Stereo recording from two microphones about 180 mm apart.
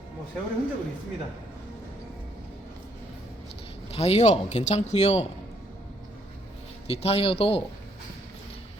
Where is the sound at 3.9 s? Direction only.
35° left (ahead or behind).